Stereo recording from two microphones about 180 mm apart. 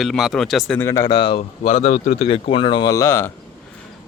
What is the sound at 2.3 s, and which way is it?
Speech, 30° left (ahead or behind).